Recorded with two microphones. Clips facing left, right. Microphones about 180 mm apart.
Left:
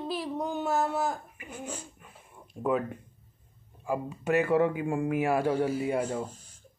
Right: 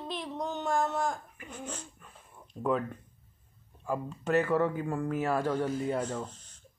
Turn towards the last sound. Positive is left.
turn(degrees=10)  # may be behind; listen again after turning